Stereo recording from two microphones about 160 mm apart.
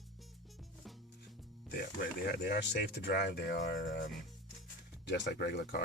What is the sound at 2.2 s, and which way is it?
Speech, 80° left.